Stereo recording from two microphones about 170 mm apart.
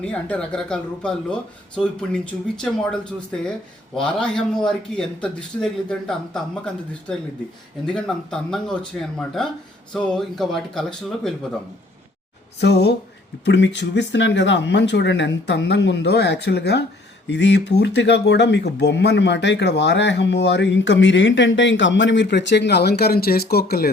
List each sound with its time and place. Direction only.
0.0 s a man's voice: 5° left (ahead or behind)
7.9 s a man's voice: 5° left (ahead or behind)
12.5 s speech: 85° left; by 23.9 s 65° left (ahead or behind)